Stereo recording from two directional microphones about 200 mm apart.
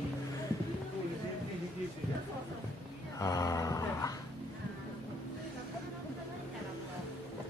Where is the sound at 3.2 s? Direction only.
15° left (ahead or behind).